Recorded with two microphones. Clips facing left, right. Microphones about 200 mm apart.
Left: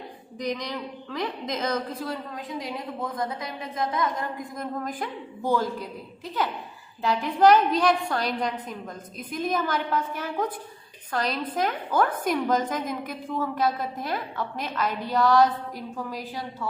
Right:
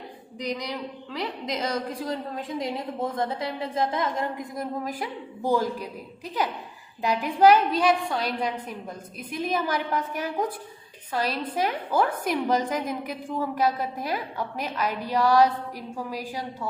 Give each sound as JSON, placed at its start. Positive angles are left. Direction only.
{"t": 0.4, "sound": "a woman's voice", "side_deg": -10}
{"t": 1.7, "sound": "a woman's voice", "side_deg": -15}
{"t": 2.3, "sound": "a woman's voice", "side_deg": -25}
{"t": 4.6, "sound": "a woman's voice", "side_deg": -5}